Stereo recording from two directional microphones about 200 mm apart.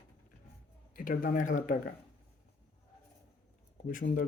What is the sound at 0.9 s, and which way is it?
Speech, 45° left (ahead or behind).